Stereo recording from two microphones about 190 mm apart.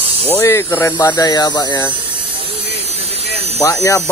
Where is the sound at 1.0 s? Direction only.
20° left (ahead or behind).